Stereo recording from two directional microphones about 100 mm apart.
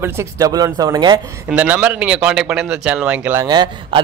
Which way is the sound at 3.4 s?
45° right (ahead or behind).